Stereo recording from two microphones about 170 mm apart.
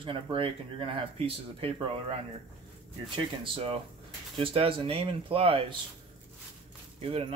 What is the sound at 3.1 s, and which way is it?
Speech, 30° right (ahead or behind).